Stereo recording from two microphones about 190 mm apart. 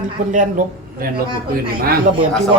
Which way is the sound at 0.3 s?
45° right (ahead or behind).